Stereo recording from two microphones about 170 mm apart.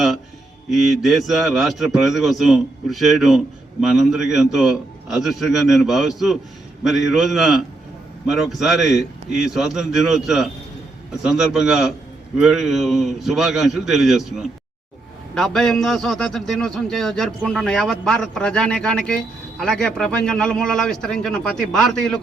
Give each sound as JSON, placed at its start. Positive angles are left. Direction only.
{"t": 0.7, "sound": "a man's voice", "side_deg": 0}